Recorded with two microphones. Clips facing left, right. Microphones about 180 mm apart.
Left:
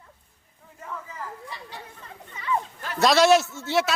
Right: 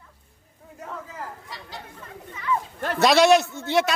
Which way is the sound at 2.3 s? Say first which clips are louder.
Right 1 dB; 25° left (ahead or behind).